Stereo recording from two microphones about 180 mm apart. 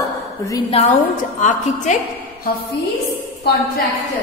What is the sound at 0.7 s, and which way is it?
A woman's voice, 40° left (ahead or behind).